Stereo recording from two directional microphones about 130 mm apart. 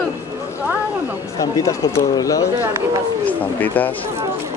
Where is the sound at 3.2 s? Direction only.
15° left (ahead or behind).